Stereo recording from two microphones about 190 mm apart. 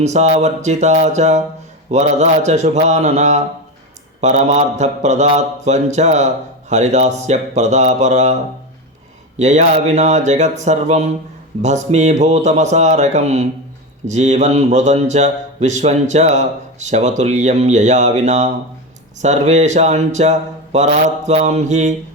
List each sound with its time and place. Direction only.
0.0 s speech: 35° right (ahead or behind)
9.4 s speech: 35° right (ahead or behind)